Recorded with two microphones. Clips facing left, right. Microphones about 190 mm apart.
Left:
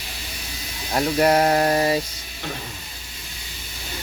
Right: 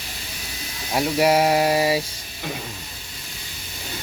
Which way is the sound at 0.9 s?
5° right (ahead or behind).